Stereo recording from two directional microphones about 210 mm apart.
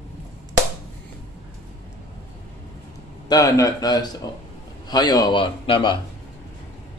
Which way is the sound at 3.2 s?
15° left (ahead or behind).